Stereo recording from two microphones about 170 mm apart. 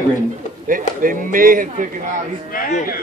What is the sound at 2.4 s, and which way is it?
Speech, 55° left (ahead or behind).